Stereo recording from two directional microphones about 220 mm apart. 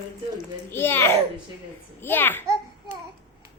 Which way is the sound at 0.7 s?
10° left (ahead or behind).